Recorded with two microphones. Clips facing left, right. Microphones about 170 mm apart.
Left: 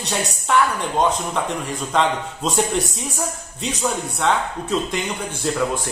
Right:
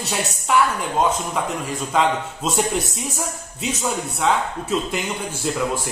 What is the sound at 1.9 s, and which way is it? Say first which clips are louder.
A man's voice: even; 5° right (ahead or behind).